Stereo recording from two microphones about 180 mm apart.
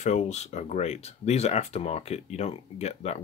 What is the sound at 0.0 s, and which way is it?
Speech, 40° left (ahead or behind).